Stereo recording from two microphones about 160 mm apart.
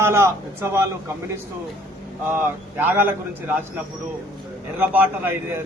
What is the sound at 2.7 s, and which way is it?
Speech, 10° right (ahead or behind).